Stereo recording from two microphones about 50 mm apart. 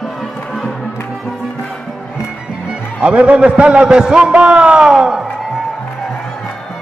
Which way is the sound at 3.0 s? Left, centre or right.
Right.